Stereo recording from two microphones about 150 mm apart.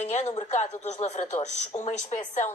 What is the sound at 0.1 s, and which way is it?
A woman's voice, 50° left (ahead or behind).